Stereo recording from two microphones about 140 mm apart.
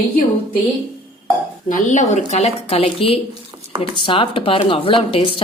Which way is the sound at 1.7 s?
60° left (ahead or behind).